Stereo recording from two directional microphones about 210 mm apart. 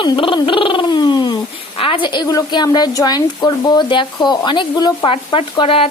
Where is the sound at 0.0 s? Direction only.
25° left (ahead or behind).